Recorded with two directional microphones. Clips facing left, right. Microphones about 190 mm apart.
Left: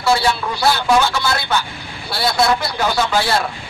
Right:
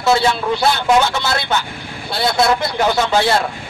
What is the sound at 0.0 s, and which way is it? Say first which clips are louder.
Speech: right 2 dB; 20° right (ahead or behind).